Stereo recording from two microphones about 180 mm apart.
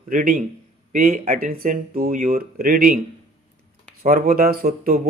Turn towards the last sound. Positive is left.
turn(degrees=-55)  # may be behind; listen again after turning